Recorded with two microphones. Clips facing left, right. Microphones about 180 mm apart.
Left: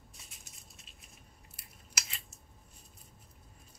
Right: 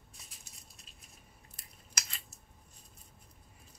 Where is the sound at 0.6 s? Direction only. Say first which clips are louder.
Left 1 dB; centre (ahead or behind).